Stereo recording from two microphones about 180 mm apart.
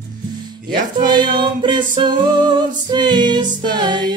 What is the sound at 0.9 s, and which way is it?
Music, 25° right (ahead or behind).